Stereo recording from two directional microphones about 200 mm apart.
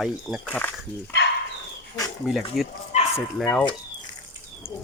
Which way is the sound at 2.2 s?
Centre (ahead or behind).